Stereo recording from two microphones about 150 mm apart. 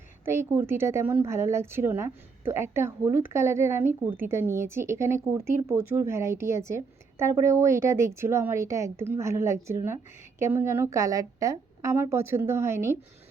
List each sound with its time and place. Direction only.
0.3 s a woman's voice: 15° right (ahead or behind)